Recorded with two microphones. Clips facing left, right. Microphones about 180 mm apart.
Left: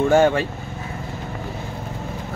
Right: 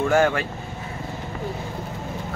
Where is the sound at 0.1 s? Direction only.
25° left (ahead or behind).